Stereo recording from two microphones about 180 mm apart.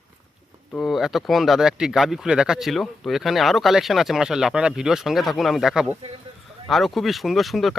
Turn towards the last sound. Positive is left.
turn(degrees=0)  # may be behind; listen again after turning